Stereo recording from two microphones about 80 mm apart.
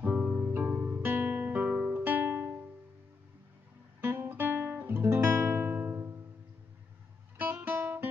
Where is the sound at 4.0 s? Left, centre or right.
Right.